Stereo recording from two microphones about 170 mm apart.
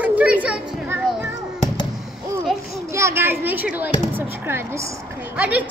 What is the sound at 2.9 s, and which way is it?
A woman's voice, 15° right (ahead or behind).